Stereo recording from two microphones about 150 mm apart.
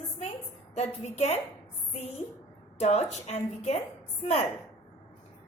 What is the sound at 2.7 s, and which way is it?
A woman's voice, 45° left (ahead or behind).